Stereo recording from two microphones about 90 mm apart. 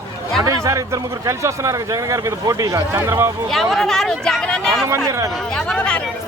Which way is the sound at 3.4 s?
Centre (ahead or behind).